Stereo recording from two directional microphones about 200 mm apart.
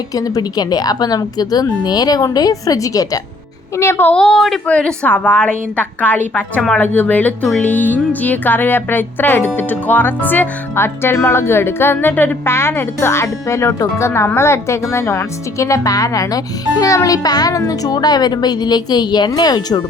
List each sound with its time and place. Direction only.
0.1 s a woman's voice: 20° left (ahead or behind)